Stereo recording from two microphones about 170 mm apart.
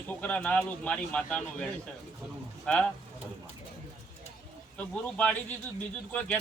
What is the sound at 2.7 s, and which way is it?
Speech, 5° left (ahead or behind).